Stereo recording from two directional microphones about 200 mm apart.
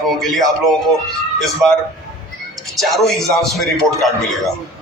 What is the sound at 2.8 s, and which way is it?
A man's voice, centre (ahead or behind).